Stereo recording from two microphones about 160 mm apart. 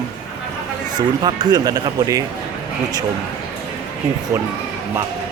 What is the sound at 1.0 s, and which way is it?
Speech, 25° right (ahead or behind).